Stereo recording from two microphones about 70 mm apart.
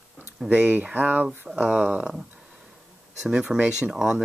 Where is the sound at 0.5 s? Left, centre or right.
Right.